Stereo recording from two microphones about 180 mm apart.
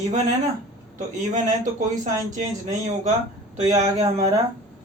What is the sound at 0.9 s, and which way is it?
Speech, 45° right (ahead or behind).